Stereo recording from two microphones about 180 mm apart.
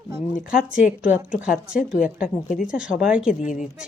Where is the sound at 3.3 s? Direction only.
45° left (ahead or behind).